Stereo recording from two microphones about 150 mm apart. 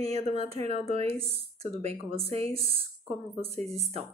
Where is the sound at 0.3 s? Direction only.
45° right (ahead or behind).